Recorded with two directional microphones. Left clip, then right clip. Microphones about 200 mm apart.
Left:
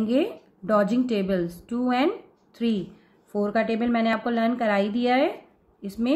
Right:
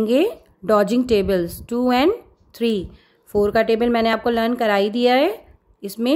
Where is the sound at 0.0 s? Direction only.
55° right (ahead or behind).